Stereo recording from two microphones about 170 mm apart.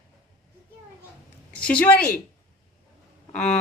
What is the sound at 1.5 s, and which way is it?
Speech, 5° left (ahead or behind).